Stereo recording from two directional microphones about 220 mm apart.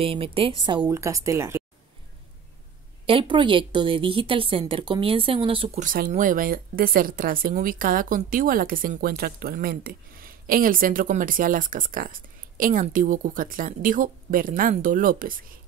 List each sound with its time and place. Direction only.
0.0 s a woman's voice: 25° right (ahead or behind)
3.1 s a woman's voice: 25° right (ahead or behind); by 15.6 s 40° right (ahead or behind)